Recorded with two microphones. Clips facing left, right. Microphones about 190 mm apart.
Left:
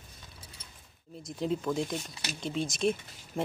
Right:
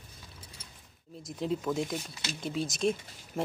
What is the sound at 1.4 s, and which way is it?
Speech, centre (ahead or behind).